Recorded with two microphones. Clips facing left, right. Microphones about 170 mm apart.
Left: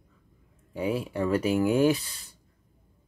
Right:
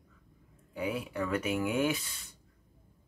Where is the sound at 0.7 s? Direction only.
30° left (ahead or behind).